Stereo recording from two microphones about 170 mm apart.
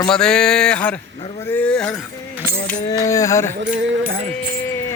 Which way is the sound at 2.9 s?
20° left (ahead or behind).